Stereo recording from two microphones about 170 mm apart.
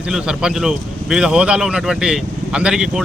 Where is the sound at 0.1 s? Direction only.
5° right (ahead or behind).